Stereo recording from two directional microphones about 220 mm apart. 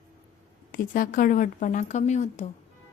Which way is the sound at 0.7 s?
40° left (ahead or behind).